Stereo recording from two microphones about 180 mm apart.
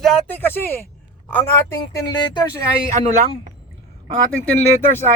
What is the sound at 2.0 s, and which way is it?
Speech, 25° left (ahead or behind).